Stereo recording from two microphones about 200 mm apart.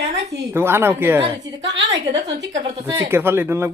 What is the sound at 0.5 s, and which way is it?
Speech, 10° right (ahead or behind).